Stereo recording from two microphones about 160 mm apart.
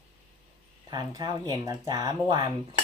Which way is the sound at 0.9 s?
25° right (ahead or behind).